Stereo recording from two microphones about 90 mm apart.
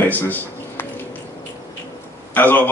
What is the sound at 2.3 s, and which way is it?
Speech, 20° left (ahead or behind).